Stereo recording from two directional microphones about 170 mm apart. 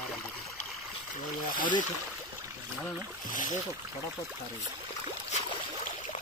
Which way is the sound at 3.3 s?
50° left (ahead or behind).